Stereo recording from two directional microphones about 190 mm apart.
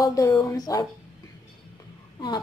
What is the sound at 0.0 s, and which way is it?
Speech, 15° left (ahead or behind).